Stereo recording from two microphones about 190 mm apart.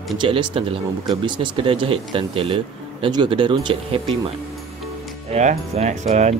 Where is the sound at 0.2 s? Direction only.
25° right (ahead or behind).